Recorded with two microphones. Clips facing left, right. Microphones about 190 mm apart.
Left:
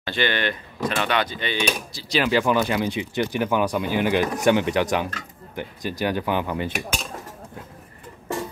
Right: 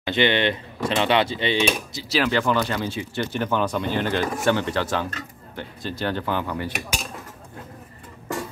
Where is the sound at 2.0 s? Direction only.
Centre (ahead or behind); by 6.7 s 20° left (ahead or behind).